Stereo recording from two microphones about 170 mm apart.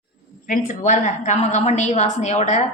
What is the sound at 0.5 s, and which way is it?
A woman's voice, 45° left (ahead or behind).